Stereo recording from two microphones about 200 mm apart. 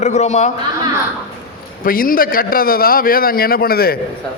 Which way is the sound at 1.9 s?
45° left (ahead or behind).